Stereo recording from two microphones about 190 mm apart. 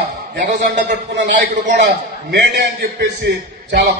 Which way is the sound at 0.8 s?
65° right (ahead or behind).